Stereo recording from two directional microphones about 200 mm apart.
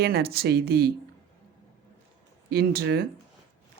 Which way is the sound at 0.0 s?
50° right (ahead or behind).